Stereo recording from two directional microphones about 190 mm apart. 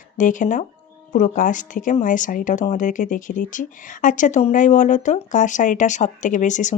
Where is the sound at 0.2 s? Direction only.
40° left (ahead or behind).